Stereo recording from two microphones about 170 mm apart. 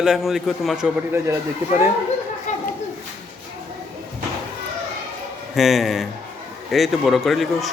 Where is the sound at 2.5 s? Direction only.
45° left (ahead or behind).